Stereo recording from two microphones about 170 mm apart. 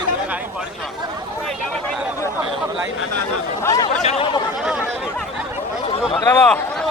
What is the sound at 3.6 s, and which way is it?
Speech, 20° left (ahead or behind).